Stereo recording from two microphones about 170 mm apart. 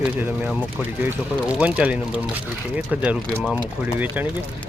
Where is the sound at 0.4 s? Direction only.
10° right (ahead or behind).